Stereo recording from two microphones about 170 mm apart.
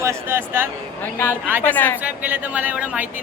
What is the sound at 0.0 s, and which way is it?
Speech, 15° right (ahead or behind).